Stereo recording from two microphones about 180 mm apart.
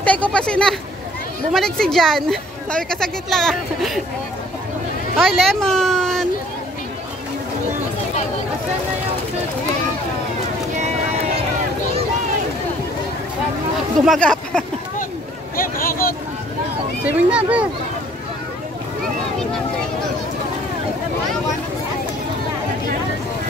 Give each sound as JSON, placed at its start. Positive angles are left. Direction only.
{"t": 0.0, "sound": "a woman's voice", "side_deg": 10}
{"t": 5.1, "sound": "a woman's voice", "side_deg": 0}
{"t": 14.0, "sound": "speech", "side_deg": 5}
{"t": 15.5, "sound": "speech", "side_deg": 55}
{"t": 17.0, "sound": "speech", "side_deg": -5}